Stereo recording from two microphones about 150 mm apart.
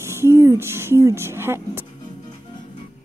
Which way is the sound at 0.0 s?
15° right (ahead or behind).